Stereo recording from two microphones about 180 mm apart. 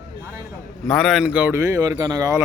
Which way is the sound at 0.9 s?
Centre (ahead or behind).